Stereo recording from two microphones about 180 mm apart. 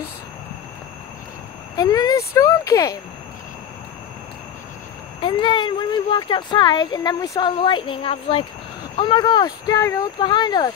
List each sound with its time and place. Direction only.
1.8 s speech: 20° left (ahead or behind)
5.2 s speech: 25° left (ahead or behind)